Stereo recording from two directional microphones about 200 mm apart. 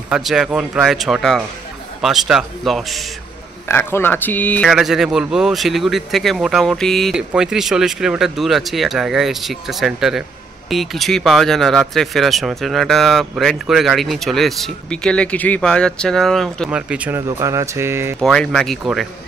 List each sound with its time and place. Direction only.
0.1 s speech: centre (ahead or behind)
3.6 s speech: 10° left (ahead or behind); by 17.2 s 5° right (ahead or behind)
17.4 s a sound: 15° right (ahead or behind)
18.2 s speech: centre (ahead or behind)